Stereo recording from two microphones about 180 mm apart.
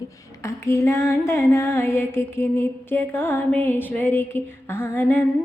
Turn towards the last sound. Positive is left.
turn(degrees=10)  # may be behind; listen again after turning